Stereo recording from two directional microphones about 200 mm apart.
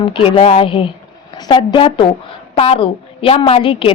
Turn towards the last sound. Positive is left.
turn(degrees=25)  # may be behind; listen again after turning